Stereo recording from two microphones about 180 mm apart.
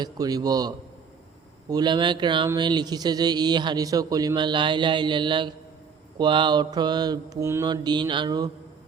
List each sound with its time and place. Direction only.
0.0 s speech: 20° right (ahead or behind)
1.7 s speech: 25° right (ahead or behind)